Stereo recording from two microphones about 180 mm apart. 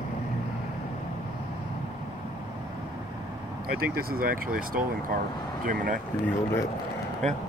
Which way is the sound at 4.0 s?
55° right (ahead or behind).